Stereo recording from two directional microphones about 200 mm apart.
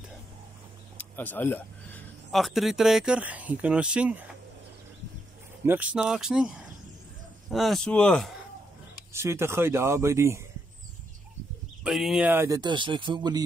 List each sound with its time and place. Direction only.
0.9 s speech: 10° left (ahead or behind)
5.7 s speech: 5° right (ahead or behind)
9.1 s speech: 15° right (ahead or behind)
11.8 s speech: centre (ahead or behind); by 13.4 s 20° right (ahead or behind)